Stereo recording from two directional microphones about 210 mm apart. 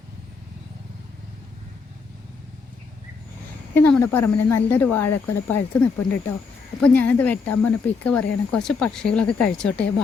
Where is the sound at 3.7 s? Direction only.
10° left (ahead or behind).